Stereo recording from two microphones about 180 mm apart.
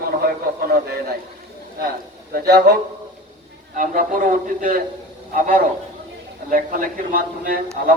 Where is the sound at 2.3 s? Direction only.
60° right (ahead or behind).